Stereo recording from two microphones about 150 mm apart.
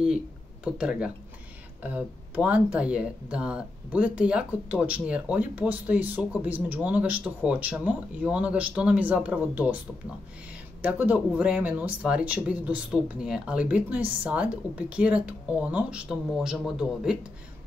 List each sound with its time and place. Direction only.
0.7 s speech: 5° right (ahead or behind)
10.8 s speech: 10° right (ahead or behind)